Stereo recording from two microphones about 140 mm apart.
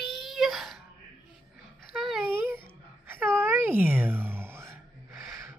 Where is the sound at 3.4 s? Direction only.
15° right (ahead or behind).